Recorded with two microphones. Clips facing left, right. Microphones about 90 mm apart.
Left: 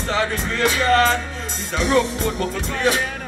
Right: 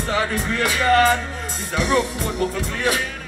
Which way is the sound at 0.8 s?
15° right (ahead or behind).